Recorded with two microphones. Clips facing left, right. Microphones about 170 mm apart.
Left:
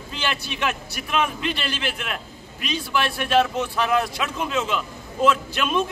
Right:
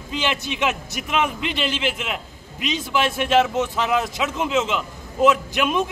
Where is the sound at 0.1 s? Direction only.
20° right (ahead or behind).